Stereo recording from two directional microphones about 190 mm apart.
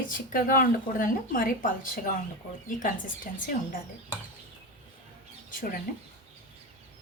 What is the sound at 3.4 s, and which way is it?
Speech, 45° left (ahead or behind).